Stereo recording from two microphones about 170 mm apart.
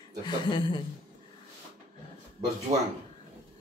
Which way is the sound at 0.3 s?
25° left (ahead or behind).